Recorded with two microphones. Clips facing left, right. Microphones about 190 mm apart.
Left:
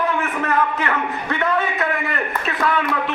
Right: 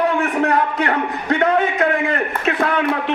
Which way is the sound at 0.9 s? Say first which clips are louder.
Right 4 dB; 40° right (ahead or behind).